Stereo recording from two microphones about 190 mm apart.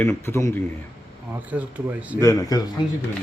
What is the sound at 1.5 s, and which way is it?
Speech, 10° right (ahead or behind).